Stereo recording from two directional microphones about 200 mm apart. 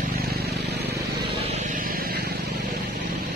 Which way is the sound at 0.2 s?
50° right (ahead or behind).